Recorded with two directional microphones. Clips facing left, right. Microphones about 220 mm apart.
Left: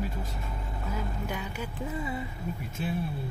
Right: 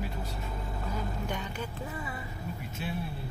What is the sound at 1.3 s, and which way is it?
Speech, 5° left (ahead or behind).